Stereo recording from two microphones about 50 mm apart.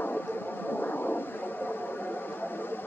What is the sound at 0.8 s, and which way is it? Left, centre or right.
Vehicle, left.